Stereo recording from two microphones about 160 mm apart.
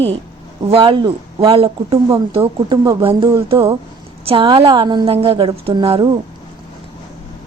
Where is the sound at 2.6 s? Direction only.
20° right (ahead or behind).